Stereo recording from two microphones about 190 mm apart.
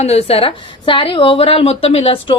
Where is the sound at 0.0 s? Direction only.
35° left (ahead or behind).